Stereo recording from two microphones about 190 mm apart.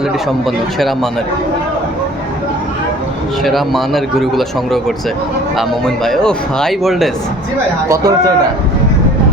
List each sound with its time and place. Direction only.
0.4 s speech: centre (ahead or behind)
3.4 s speech: centre (ahead or behind)
7.9 s a man's voice: 20° right (ahead or behind)